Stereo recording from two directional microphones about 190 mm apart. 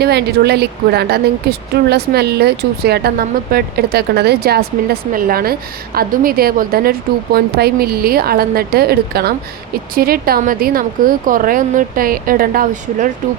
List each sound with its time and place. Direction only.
0.0 s a woman's voice: 60° right (ahead or behind)